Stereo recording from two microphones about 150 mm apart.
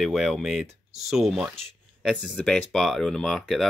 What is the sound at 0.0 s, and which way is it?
Speech, centre (ahead or behind).